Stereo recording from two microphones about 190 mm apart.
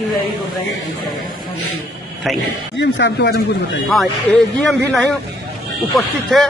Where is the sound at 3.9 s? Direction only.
Centre (ahead or behind).